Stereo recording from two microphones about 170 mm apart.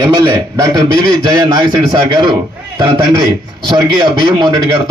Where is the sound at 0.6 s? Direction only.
20° right (ahead or behind).